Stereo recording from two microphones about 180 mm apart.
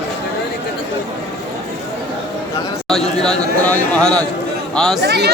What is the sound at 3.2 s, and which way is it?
A man's voice, 5° left (ahead or behind).